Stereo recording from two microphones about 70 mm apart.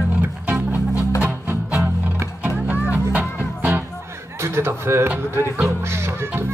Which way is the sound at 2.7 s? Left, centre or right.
Right.